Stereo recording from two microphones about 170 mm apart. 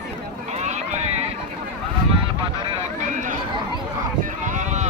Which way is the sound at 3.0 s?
45° right (ahead or behind).